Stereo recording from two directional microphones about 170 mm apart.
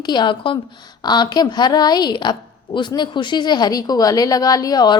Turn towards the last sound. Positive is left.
turn(degrees=25)  # may be behind; listen again after turning